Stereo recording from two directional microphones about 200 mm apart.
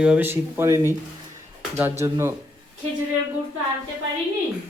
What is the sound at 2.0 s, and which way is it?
Speech, 15° right (ahead or behind).